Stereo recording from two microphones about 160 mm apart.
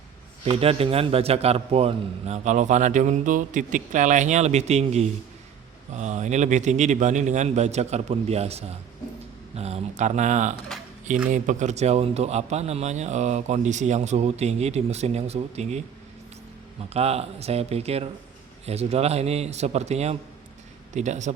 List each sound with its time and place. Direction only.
0.4 s a man's voice: 35° right (ahead or behind)
16.9 s a man's voice: 40° right (ahead or behind)